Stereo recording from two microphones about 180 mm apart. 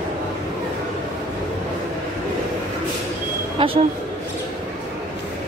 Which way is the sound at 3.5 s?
30° right (ahead or behind).